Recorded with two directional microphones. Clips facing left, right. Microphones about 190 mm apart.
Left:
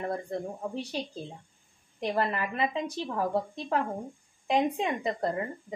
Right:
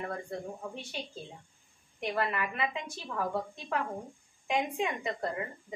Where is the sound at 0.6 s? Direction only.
35° left (ahead or behind).